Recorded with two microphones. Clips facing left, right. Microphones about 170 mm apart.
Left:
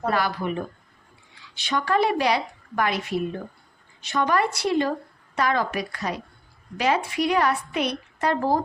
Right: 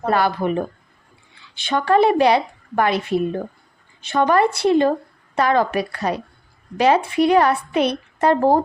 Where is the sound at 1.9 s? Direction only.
25° right (ahead or behind).